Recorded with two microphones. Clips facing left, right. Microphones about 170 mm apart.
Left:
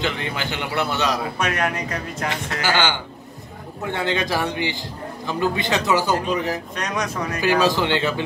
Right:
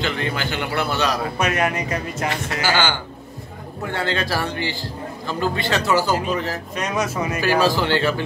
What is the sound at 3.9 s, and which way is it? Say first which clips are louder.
Speech: left 1 dB; 20° left (ahead or behind).